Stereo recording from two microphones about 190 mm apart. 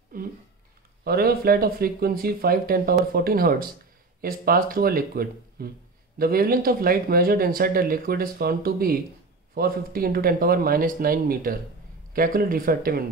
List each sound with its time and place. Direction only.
1.0 s speech: 55° right (ahead or behind)